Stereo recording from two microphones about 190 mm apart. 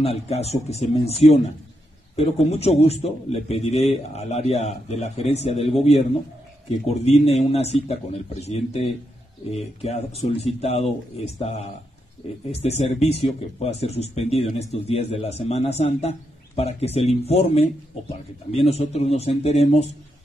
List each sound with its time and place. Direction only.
0.0 s a man's voice: 35° left (ahead or behind)